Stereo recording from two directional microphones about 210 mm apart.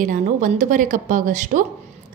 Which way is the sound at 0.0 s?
40° right (ahead or behind).